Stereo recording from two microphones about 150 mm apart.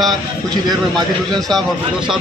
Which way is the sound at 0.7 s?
30° right (ahead or behind).